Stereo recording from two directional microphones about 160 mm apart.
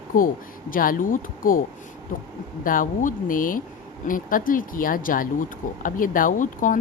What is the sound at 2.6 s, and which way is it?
Speech, 60° left (ahead or behind).